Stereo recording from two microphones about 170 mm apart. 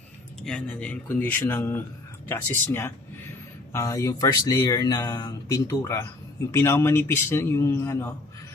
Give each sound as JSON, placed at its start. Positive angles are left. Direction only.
{"t": 0.4, "sound": "a man's voice", "side_deg": 5}